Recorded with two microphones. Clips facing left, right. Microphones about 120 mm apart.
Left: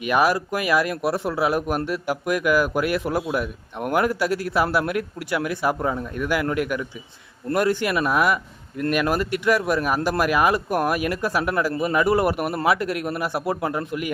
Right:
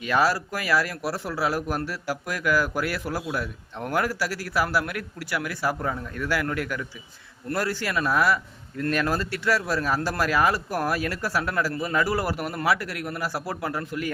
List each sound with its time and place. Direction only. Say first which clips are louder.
0.0 s a man's voice: left 3 dB; 20° left (ahead or behind)